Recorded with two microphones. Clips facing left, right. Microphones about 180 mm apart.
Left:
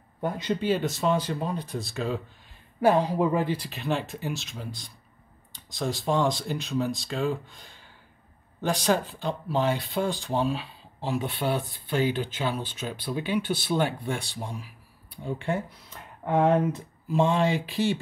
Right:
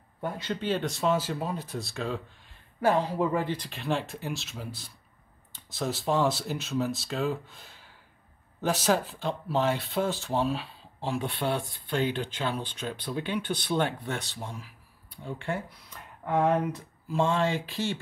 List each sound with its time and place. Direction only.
0.2 s speech: 20° left (ahead or behind)
0.6 s speech: 5° left (ahead or behind)
2.8 s speech: 15° left (ahead or behind)